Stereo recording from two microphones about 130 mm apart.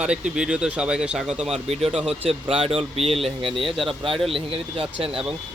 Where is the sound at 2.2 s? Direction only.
50° right (ahead or behind).